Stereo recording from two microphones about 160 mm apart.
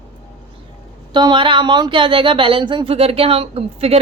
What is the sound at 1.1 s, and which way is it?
Speech, 25° right (ahead or behind).